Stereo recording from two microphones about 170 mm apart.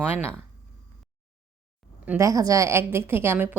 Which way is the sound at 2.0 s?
15° right (ahead or behind).